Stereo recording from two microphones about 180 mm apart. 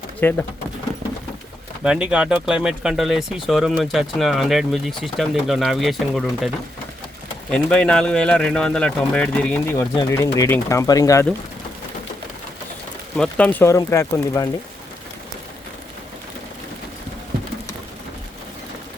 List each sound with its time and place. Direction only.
0.2 s speech: 10° left (ahead or behind)
1.8 s speech: 5° right (ahead or behind)
7.5 s speech: 5° left (ahead or behind)
9.9 s speech: 20° left (ahead or behind)
13.1 s speech: 5° left (ahead or behind)